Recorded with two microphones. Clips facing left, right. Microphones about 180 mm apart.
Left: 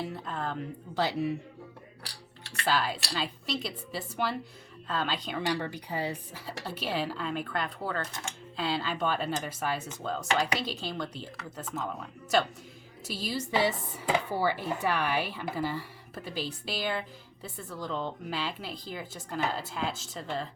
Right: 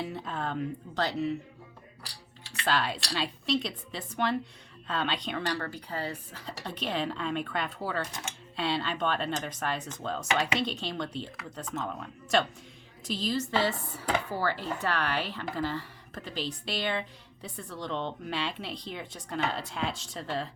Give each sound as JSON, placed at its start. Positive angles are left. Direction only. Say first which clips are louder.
{"t": 0.0, "sound": "speech", "louder": "even", "side_deg": 0}
{"t": 2.6, "sound": "speech", "louder": "even", "side_deg": 0}
{"t": 5.5, "sound": "speech", "louder": "left 2 dB", "side_deg": 15}